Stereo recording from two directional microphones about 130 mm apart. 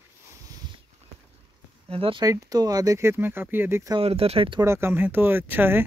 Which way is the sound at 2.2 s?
25° right (ahead or behind).